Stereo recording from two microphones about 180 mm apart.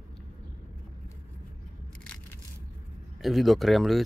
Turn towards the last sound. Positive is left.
turn(degrees=0)  # may be behind; listen again after turning